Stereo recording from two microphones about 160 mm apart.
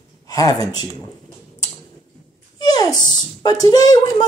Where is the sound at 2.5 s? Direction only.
25° left (ahead or behind).